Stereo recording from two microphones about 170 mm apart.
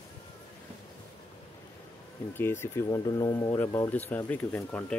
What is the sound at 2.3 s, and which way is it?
Speech, 15° left (ahead or behind).